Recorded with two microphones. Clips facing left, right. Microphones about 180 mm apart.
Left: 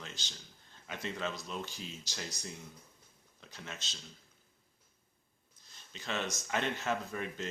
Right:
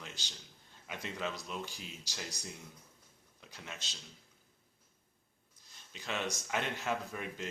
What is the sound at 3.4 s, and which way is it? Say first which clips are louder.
Speech: left 1 dB; 10° right (ahead or behind).